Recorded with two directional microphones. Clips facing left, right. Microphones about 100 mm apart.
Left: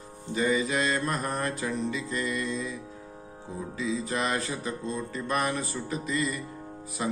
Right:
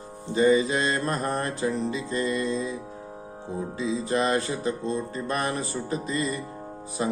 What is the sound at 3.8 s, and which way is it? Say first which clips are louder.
Music: right 4 dB; 30° right (ahead or behind).